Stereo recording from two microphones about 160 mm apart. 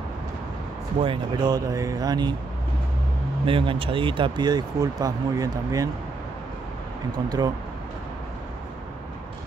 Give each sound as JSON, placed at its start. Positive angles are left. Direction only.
{"t": 1.0, "sound": "speech", "side_deg": -30}
{"t": 3.4, "sound": "speech", "side_deg": -35}
{"t": 7.2, "sound": "speech", "side_deg": -25}